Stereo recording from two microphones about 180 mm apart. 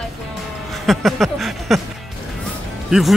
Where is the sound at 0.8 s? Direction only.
Centre (ahead or behind).